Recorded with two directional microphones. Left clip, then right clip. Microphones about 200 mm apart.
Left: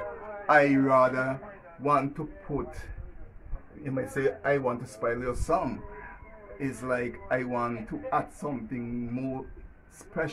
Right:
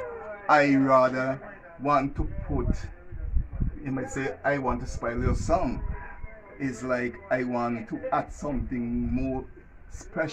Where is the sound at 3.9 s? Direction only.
25° left (ahead or behind).